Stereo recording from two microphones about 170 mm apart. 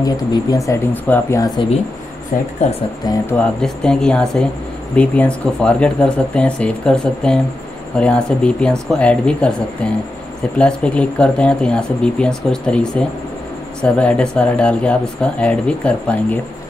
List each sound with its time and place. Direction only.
0.0 s speech: 20° left (ahead or behind)
2.3 s speech: 50° left (ahead or behind)
3.3 s speech: 5° left (ahead or behind)
10.6 s speech: 5° left (ahead or behind)